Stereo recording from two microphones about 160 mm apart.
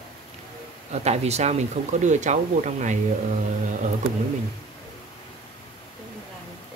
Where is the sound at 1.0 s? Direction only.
40° right (ahead or behind).